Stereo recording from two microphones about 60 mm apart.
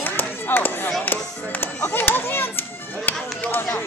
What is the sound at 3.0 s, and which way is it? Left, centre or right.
Chop, left.